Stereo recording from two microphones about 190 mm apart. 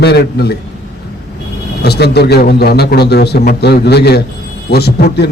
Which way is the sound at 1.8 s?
60° left (ahead or behind).